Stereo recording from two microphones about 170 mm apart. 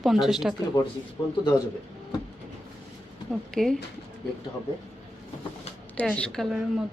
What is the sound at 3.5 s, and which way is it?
Speech, 5° left (ahead or behind).